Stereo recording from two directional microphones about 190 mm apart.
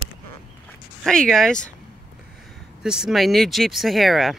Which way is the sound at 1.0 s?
Centre (ahead or behind).